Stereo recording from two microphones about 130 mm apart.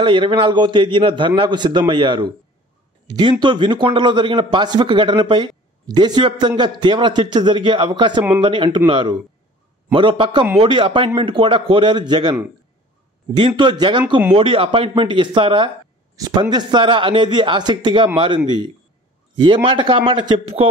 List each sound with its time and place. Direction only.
0.0 s speech: 40° right (ahead or behind)
13.4 s speech: 35° right (ahead or behind)